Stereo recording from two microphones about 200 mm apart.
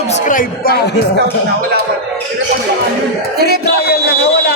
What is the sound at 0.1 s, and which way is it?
Speech, 40° left (ahead or behind).